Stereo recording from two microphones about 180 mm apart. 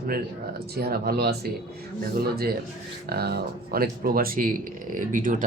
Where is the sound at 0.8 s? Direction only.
60° right (ahead or behind).